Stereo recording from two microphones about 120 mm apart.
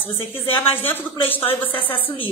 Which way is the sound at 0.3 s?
20° left (ahead or behind).